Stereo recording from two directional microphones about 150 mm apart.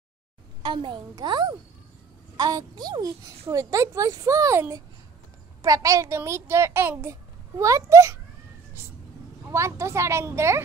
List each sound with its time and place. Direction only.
0.6 s a child's voice: 30° right (ahead or behind)
9.5 s a child's voice: 20° right (ahead or behind)